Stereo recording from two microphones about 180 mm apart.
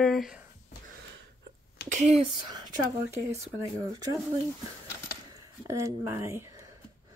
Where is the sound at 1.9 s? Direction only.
40° right (ahead or behind).